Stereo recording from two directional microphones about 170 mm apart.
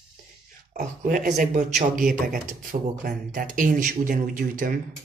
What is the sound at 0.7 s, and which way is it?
Speech, 50° right (ahead or behind).